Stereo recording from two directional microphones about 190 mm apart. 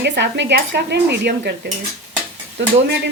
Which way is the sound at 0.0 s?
65° right (ahead or behind).